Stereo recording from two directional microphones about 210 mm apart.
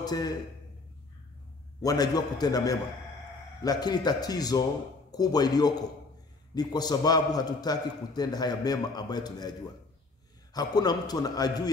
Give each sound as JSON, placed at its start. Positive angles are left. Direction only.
{"t": 0.0, "sound": "a man's voice", "side_deg": 20}
{"t": 1.8, "sound": "a man's voice", "side_deg": 15}